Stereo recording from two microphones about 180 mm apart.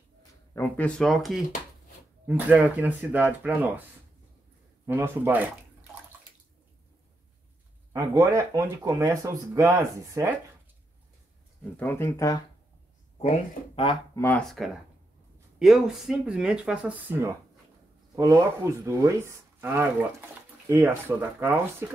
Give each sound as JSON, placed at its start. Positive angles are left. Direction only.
{"t": 0.6, "sound": "speech", "side_deg": 10}
{"t": 4.8, "sound": "speech", "side_deg": -10}
{"t": 7.9, "sound": "speech", "side_deg": -15}
{"t": 11.7, "sound": "speech", "side_deg": 15}
{"t": 14.1, "sound": "speech", "side_deg": 15}
{"t": 15.6, "sound": "speech", "side_deg": -5}